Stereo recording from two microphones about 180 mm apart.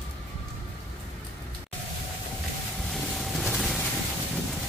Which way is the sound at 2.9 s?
Centre (ahead or behind).